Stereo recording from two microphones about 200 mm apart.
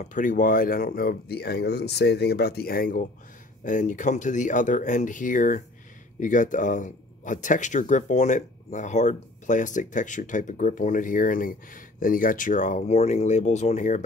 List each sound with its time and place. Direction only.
0.0 s speech: 40° left (ahead or behind)